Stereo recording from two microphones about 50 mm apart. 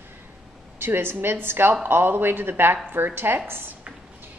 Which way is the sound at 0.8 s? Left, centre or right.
Right.